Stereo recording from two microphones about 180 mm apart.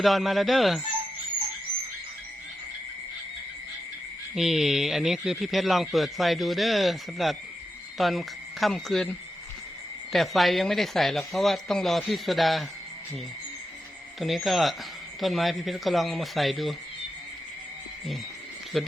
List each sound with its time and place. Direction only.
0.0 s speech: centre (ahead or behind)
4.4 s speech: centre (ahead or behind)
14.2 s speech: centre (ahead or behind)
18.7 s speech: centre (ahead or behind)